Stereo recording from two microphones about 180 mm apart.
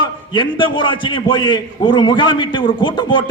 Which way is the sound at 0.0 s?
25° left (ahead or behind).